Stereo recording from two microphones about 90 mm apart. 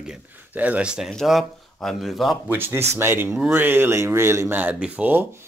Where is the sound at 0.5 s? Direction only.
20° right (ahead or behind); by 2.3 s centre (ahead or behind).